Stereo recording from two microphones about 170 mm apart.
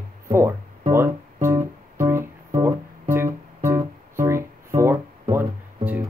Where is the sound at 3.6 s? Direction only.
15° right (ahead or behind).